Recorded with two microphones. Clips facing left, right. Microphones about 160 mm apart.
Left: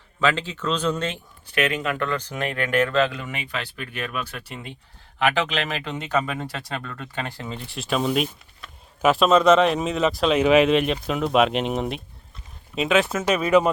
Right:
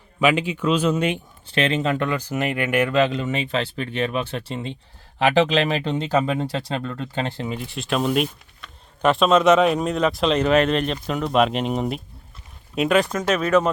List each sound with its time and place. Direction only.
0.2 s a man's voice: 15° right (ahead or behind)
1.5 s speech: 25° right (ahead or behind)
2.0 s speech: 10° right (ahead or behind)
7.5 s speech: 5° right (ahead or behind)